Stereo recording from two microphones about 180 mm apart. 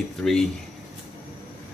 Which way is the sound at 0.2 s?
5° left (ahead or behind).